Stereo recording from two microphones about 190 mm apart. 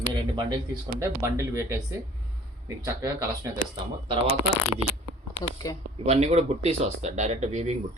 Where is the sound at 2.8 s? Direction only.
20° right (ahead or behind).